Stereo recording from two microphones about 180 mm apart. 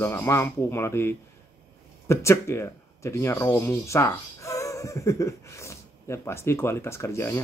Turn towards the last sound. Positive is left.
turn(degrees=15)  # may be behind; listen again after turning